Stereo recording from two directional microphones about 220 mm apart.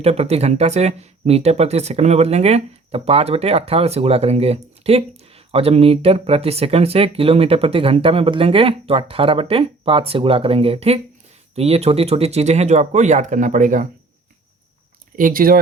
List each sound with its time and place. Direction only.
0.0 s speech: 30° right (ahead or behind)
15.1 s speech: 40° right (ahead or behind)